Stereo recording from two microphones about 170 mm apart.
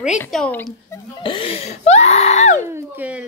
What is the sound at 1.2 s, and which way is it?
Speech, 30° left (ahead or behind).